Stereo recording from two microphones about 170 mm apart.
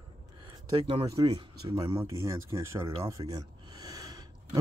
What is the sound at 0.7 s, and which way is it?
Speech, 30° right (ahead or behind).